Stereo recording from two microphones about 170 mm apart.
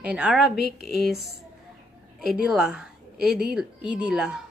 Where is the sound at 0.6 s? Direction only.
65° left (ahead or behind).